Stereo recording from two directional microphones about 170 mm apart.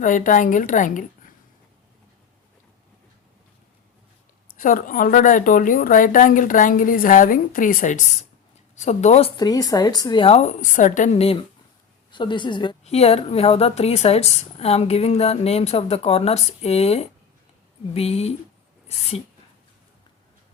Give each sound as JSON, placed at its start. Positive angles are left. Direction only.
{"t": 0.0, "sound": "speech", "side_deg": 50}
{"t": 4.5, "sound": "speech", "side_deg": 55}
{"t": 9.4, "sound": "a woman's voice", "side_deg": 20}
{"t": 12.1, "sound": "a woman's voice", "side_deg": 25}